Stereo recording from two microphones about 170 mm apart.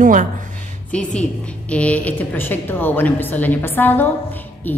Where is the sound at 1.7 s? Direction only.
10° left (ahead or behind).